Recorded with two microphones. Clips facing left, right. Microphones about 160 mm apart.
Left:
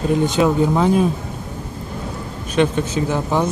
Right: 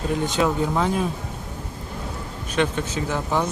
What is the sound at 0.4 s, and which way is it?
Speech, 15° left (ahead or behind).